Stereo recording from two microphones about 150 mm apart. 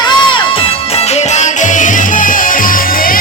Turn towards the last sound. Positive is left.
turn(degrees=70)  # may be behind; listen again after turning